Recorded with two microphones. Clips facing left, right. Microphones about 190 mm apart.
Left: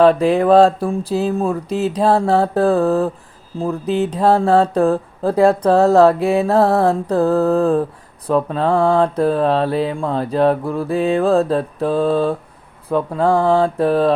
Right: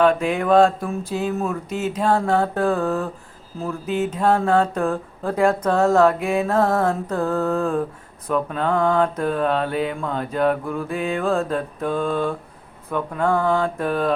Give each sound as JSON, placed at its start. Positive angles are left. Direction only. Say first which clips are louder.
{"t": 0.0, "sound": "speech", "louder": "left 6 dB", "side_deg": 35}